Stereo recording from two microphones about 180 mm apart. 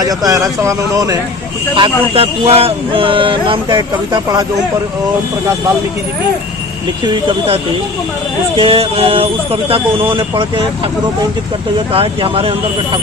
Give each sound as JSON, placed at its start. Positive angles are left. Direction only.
{"t": 0.0, "sound": "speech", "side_deg": -20}
{"t": 1.7, "sound": "speech", "side_deg": -30}
{"t": 7.0, "sound": "speech", "side_deg": -30}
{"t": 11.9, "sound": "speech", "side_deg": -30}